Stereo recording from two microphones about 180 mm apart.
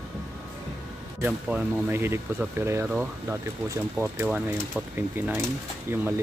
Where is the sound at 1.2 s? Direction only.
10° right (ahead or behind).